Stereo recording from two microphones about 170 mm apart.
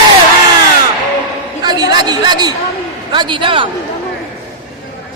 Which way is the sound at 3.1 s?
30° right (ahead or behind).